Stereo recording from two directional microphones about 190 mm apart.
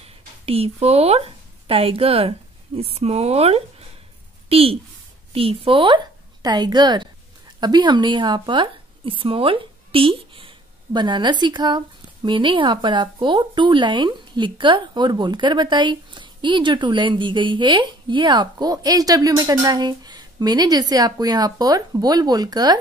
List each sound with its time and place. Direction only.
0.5 s a woman's voice: 30° right (ahead or behind)